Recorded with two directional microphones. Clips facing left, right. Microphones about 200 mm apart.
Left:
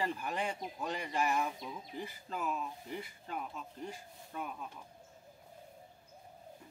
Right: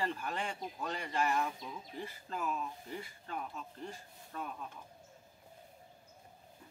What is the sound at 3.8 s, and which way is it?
Speech, 10° left (ahead or behind).